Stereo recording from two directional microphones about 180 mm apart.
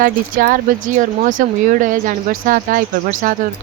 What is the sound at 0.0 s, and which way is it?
Speech, 50° right (ahead or behind).